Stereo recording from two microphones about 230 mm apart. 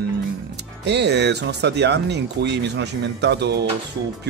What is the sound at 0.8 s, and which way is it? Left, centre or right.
Speech, right.